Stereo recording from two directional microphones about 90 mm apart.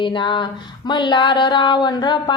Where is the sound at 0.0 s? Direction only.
60° left (ahead or behind).